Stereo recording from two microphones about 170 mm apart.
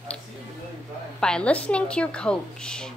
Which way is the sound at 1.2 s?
5° left (ahead or behind).